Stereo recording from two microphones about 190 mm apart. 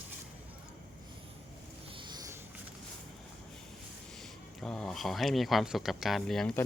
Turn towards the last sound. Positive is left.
turn(degrees=0)  # may be behind; listen again after turning